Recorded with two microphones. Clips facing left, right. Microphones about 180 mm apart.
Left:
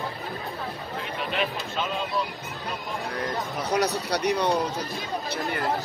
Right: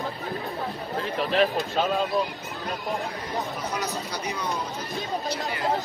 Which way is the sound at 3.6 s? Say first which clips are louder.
Left 5 dB; 65° left (ahead or behind).